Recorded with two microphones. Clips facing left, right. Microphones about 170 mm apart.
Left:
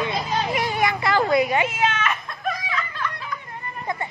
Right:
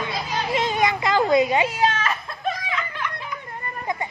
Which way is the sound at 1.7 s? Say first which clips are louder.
Right 1 dB; 35° right (ahead or behind).